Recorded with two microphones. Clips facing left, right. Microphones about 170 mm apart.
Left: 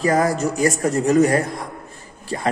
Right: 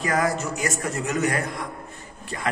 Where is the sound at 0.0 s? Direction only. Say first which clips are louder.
Left 6 dB; 35° left (ahead or behind).